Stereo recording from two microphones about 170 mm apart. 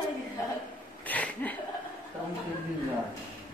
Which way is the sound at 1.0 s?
10° left (ahead or behind).